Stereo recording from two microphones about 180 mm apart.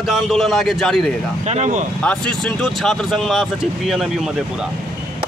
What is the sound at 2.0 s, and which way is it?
A man's voice, 5° left (ahead or behind).